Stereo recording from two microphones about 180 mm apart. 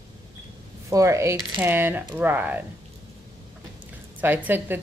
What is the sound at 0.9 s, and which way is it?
A woman's voice, 15° right (ahead or behind).